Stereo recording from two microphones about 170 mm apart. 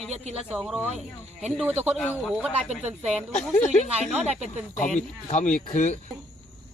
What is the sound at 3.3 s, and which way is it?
Speech, 40° left (ahead or behind).